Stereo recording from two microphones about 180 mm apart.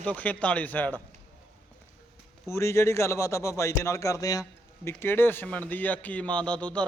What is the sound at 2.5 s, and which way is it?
A man's voice, 15° left (ahead or behind).